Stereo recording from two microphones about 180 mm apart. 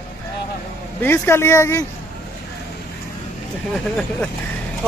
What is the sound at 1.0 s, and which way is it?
Speech, 10° left (ahead or behind).